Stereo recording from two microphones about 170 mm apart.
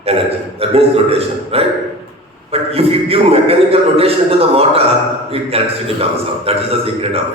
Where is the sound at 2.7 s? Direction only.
35° right (ahead or behind).